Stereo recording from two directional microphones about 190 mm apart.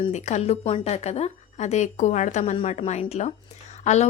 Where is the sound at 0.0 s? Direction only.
35° left (ahead or behind).